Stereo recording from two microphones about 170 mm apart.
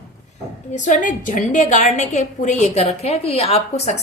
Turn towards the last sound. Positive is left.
turn(degrees=40)  # may be behind; listen again after turning